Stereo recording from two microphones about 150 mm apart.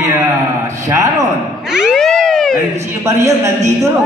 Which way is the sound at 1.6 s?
5° right (ahead or behind).